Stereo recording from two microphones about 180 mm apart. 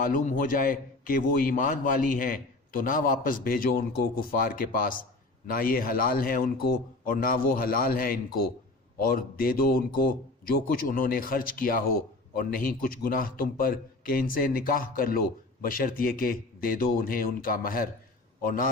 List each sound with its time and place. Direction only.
0.0 s a man's voice: 50° left (ahead or behind)